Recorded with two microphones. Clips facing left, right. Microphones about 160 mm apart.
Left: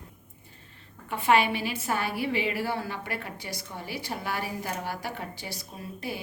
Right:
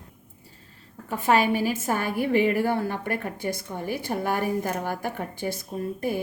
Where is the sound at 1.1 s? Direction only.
40° right (ahead or behind).